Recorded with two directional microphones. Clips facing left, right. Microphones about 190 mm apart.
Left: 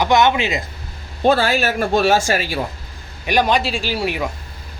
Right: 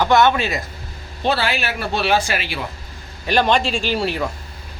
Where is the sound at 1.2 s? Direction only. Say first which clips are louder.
Left 5 dB; 45° left (ahead or behind).